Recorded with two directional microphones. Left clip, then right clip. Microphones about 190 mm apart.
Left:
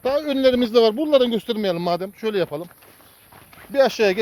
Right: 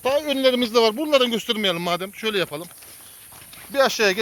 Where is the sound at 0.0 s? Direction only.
45° left (ahead or behind); by 2.6 s 20° left (ahead or behind).